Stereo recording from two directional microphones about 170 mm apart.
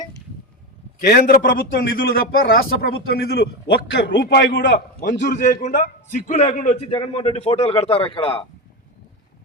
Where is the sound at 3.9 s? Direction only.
90° left.